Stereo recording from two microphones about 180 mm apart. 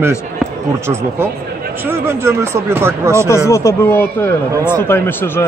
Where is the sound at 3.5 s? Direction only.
15° left (ahead or behind).